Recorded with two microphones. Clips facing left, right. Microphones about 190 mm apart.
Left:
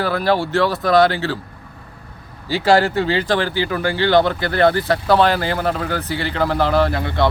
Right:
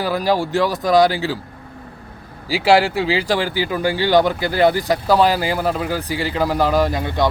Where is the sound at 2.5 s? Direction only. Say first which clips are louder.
Even; 10° right (ahead or behind).